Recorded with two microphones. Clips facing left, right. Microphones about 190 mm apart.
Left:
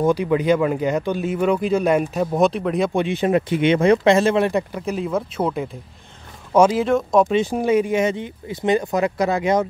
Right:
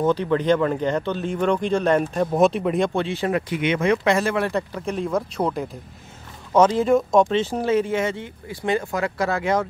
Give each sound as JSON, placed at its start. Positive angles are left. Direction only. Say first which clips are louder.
{"t": 0.0, "sound": "speech", "louder": "left 2 dB", "side_deg": 10}
{"t": 2.9, "sound": "speech", "louder": "left 4 dB", "side_deg": 15}
{"t": 7.3, "sound": "speech", "louder": "left 3 dB", "side_deg": 15}